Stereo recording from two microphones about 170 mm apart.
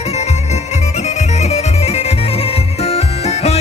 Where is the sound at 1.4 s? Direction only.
35° left (ahead or behind).